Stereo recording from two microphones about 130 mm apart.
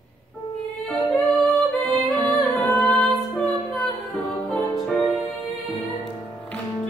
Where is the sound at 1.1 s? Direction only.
Centre (ahead or behind).